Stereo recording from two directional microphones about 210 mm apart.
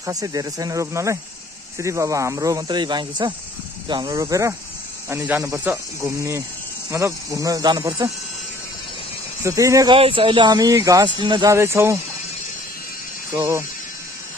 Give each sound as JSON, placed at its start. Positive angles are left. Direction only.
{"t": 0.0, "sound": "speech", "side_deg": -15}
{"t": 9.4, "sound": "speech", "side_deg": -15}
{"t": 13.3, "sound": "speech", "side_deg": -15}